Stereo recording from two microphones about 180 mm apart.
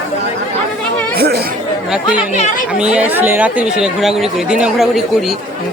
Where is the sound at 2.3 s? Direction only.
45° left (ahead or behind).